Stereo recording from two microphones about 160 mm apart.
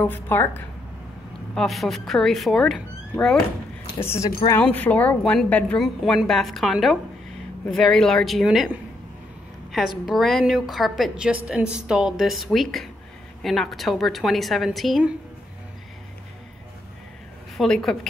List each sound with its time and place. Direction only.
0.0 s a woman's voice: 10° left (ahead or behind)
1.5 s a woman's voice: centre (ahead or behind)
4.0 s a woman's voice: 15° left (ahead or behind); by 8.6 s centre (ahead or behind)
9.7 s a woman's voice: centre (ahead or behind)
17.6 s a woman's voice: 5° left (ahead or behind)